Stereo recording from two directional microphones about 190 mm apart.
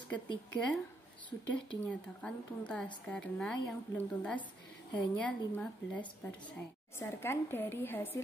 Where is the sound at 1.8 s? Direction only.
5° left (ahead or behind).